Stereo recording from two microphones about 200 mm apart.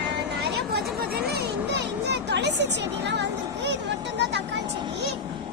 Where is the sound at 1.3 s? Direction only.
55° right (ahead or behind).